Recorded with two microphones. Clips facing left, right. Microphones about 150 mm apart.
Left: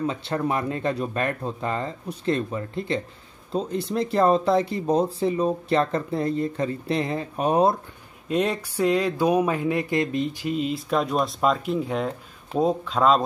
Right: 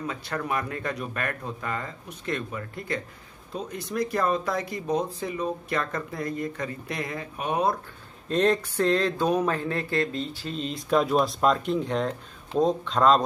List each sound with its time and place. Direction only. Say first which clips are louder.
0.0 s speech: left 6 dB; 25° left (ahead or behind)
8.3 s speech: right 1 dB; 10° left (ahead or behind)